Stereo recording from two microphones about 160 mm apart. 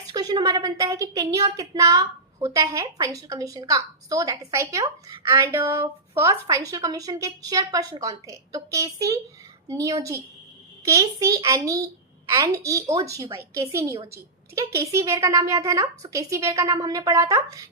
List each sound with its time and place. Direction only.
0.1 s a woman's voice: 25° right (ahead or behind)